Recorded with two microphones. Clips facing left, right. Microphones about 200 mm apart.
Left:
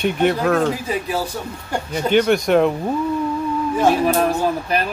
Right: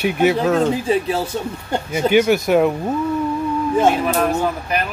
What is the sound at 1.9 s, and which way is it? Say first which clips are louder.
Speech: right 1 dB; 5° right (ahead or behind).